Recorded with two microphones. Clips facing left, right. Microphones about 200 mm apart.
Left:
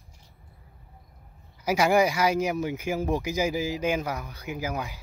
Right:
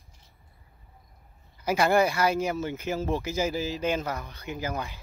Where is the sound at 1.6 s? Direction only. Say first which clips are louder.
Left 1 dB; 10° left (ahead or behind).